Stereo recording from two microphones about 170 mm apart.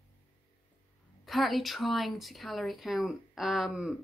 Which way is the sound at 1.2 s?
Centre (ahead or behind).